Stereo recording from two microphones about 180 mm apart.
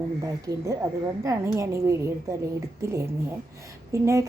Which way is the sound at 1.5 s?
15° right (ahead or behind).